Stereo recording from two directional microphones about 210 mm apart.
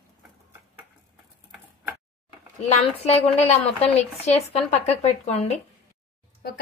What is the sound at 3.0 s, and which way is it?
Speech, 30° left (ahead or behind).